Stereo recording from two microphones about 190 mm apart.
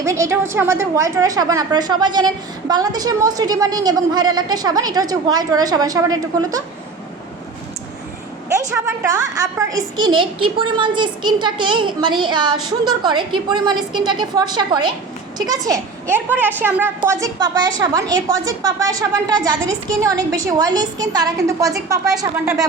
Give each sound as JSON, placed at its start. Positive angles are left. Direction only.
{"t": 0.0, "sound": "a woman's voice", "side_deg": -15}
{"t": 8.7, "sound": "a woman's voice", "side_deg": -15}